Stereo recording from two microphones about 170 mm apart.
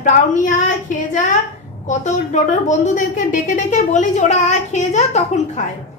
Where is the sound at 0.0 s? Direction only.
50° left (ahead or behind).